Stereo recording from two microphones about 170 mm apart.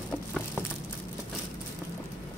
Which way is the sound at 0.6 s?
15° left (ahead or behind).